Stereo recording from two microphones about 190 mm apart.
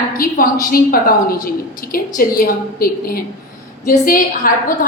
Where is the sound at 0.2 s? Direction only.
50° left (ahead or behind).